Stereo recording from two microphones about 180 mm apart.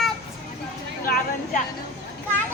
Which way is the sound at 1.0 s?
55° left (ahead or behind).